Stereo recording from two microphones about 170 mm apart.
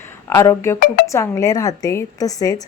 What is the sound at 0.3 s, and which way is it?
A woman's voice, 15° left (ahead or behind).